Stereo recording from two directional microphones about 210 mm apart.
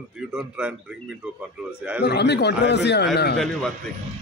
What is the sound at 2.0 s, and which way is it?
A man's voice, 50° left (ahead or behind).